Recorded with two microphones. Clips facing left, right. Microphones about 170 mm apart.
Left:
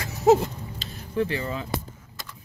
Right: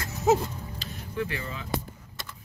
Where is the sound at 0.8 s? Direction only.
30° left (ahead or behind).